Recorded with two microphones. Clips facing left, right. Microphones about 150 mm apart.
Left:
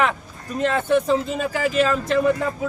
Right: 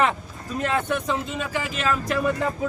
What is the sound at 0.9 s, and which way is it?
Speech, 35° left (ahead or behind).